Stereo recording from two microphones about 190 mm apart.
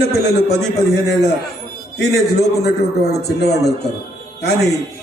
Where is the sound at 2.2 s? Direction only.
60° left (ahead or behind).